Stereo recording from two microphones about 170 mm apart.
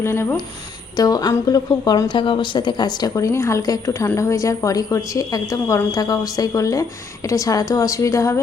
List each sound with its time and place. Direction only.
0.0 s a woman's voice: 15° left (ahead or behind)